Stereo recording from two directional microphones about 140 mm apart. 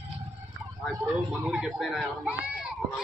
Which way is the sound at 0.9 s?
10° right (ahead or behind).